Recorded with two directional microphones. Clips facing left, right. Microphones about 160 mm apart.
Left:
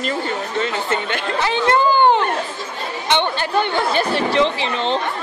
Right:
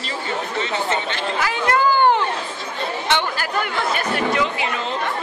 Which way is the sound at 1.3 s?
25° left (ahead or behind).